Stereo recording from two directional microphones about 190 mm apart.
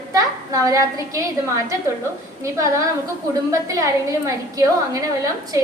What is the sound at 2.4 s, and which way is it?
Speech, 15° right (ahead or behind).